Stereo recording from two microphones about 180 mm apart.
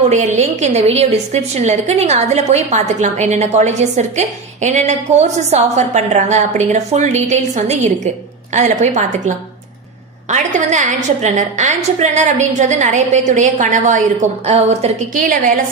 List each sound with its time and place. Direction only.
0.1 s a woman's voice: 40° right (ahead or behind)
10.3 s a woman's voice: 40° right (ahead or behind)